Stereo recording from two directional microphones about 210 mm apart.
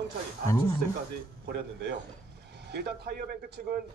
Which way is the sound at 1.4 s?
55° right (ahead or behind).